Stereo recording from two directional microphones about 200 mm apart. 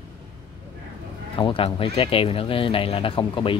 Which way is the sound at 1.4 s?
25° left (ahead or behind).